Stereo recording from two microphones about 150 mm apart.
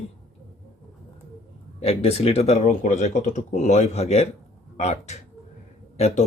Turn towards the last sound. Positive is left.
turn(degrees=45)  # may be behind; listen again after turning